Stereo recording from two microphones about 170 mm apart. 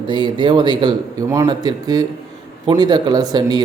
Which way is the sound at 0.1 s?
25° right (ahead or behind).